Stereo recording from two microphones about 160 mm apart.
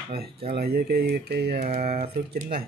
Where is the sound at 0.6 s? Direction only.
75° right (ahead or behind).